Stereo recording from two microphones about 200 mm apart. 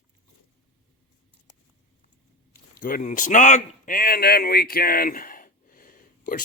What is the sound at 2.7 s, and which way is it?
A man's voice, 45° left (ahead or behind).